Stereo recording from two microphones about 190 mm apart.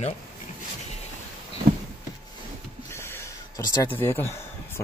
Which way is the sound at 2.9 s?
15° left (ahead or behind).